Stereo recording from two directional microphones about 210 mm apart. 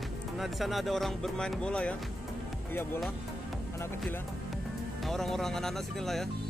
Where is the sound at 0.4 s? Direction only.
Centre (ahead or behind).